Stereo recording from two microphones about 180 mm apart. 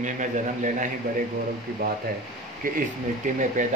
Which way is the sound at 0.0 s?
45° right (ahead or behind).